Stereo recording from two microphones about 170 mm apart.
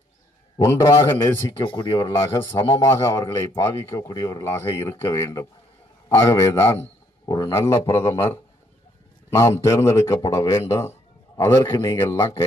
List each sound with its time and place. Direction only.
0.7 s a man's voice: 15° left (ahead or behind)
1.6 s speech: 30° left (ahead or behind)
2.1 s a man's voice: 15° left (ahead or behind)
9.3 s a man's voice: 15° left (ahead or behind)